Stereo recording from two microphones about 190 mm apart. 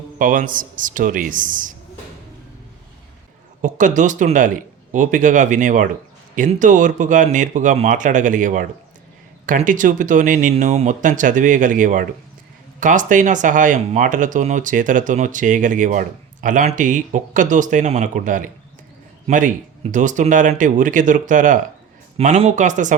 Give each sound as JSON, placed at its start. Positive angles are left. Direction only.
{"t": 0.2, "sound": "speech", "side_deg": -45}
{"t": 3.6, "sound": "speech", "side_deg": -40}